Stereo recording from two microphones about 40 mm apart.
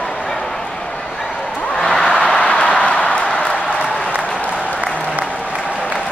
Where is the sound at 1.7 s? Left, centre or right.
Centre.